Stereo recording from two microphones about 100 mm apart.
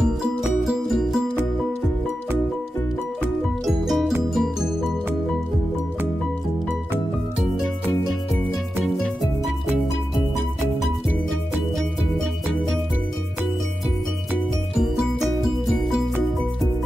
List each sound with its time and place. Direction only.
0.0 s music: 5° right (ahead or behind)
3.6 s music: centre (ahead or behind)
14.8 s music: centre (ahead or behind)